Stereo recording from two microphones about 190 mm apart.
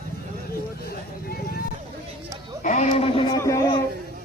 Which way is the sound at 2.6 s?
40° left (ahead or behind).